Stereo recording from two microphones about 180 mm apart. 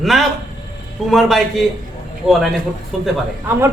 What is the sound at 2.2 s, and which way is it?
Speech, centre (ahead or behind).